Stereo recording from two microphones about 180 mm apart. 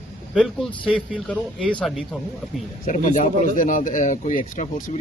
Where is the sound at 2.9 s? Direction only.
45° left (ahead or behind).